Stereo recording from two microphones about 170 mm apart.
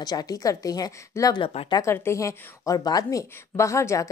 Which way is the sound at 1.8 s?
15° left (ahead or behind).